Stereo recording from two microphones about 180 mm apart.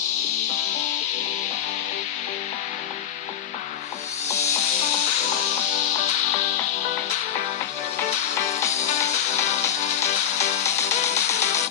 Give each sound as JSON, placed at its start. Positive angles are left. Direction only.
{"t": 10.8, "sound": "music", "side_deg": 40}